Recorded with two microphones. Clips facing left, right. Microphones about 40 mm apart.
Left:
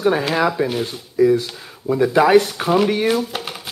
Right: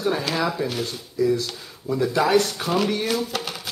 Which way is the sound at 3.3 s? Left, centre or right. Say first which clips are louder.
Left 1 dB; centre.